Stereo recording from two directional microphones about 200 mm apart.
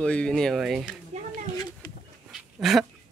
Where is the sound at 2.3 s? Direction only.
Centre (ahead or behind).